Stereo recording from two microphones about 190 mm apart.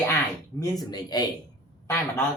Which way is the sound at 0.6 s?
20° left (ahead or behind).